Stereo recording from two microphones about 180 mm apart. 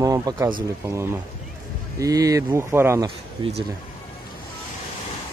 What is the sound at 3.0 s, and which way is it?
Speech, 30° right (ahead or behind).